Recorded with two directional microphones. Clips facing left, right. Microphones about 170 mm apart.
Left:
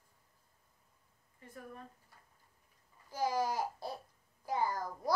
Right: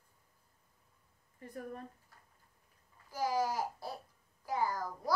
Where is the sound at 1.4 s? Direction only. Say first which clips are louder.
Right 6 dB; 40° right (ahead or behind).